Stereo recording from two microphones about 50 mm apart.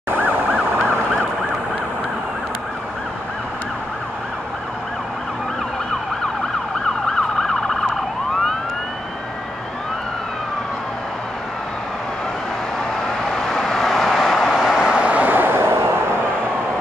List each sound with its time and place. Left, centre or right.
0.1 s emergency vehicle: right
7.1 s emergency vehicle: centre
13.3 s vehicle: centre
14.5 s vehicle: centre; by 15.7 s right